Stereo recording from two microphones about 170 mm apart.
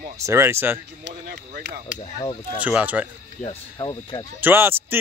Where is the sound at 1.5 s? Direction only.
80° right.